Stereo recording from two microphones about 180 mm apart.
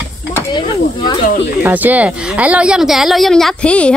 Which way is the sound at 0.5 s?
25° left (ahead or behind).